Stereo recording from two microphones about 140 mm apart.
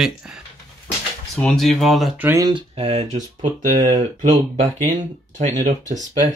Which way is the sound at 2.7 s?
50° right (ahead or behind).